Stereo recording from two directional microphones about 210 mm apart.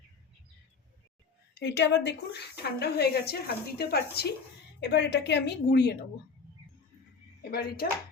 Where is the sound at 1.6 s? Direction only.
55° left (ahead or behind).